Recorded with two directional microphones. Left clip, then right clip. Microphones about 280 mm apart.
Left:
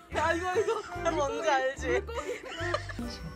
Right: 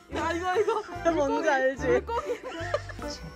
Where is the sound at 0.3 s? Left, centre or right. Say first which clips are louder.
Right 5 dB; centre.